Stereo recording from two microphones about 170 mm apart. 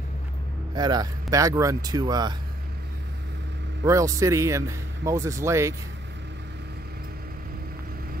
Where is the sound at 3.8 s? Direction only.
20° right (ahead or behind).